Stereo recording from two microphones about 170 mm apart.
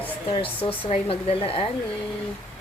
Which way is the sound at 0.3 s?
35° left (ahead or behind).